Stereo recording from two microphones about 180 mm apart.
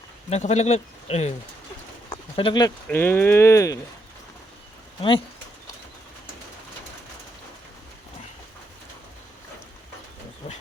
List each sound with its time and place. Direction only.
0.3 s speech: 40° left (ahead or behind); by 3.8 s 15° left (ahead or behind)
10.4 s speech: 35° left (ahead or behind)